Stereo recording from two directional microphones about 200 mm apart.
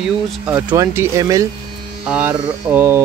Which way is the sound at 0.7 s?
15° right (ahead or behind).